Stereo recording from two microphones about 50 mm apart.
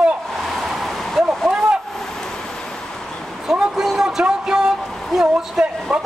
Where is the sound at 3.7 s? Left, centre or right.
Centre.